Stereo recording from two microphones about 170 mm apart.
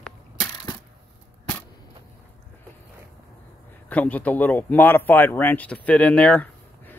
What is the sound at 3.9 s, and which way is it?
Speech, 10° left (ahead or behind).